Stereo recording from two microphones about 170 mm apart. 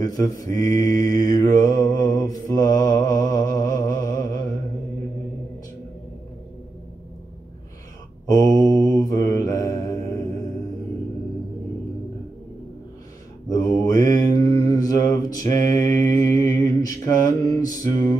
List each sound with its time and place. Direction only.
0.0 s mantra: 20° left (ahead or behind)
8.3 s mantra: 20° left (ahead or behind)
13.5 s mantra: 20° left (ahead or behind)